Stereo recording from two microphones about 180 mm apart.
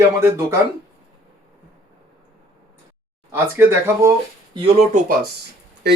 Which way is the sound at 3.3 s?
15° right (ahead or behind).